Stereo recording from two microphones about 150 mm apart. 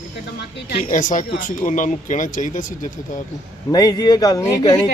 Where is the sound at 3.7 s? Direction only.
25° left (ahead or behind).